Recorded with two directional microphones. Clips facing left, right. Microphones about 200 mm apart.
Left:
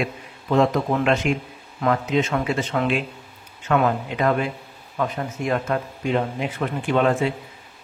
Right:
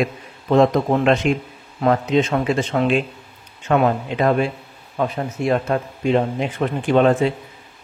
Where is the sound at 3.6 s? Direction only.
30° right (ahead or behind).